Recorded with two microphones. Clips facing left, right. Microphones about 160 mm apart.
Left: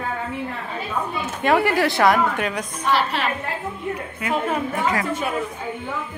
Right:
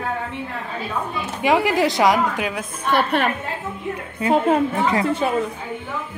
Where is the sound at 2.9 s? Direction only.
55° right (ahead or behind).